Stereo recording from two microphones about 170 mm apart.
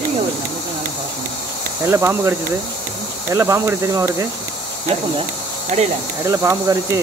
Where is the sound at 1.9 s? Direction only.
15° right (ahead or behind).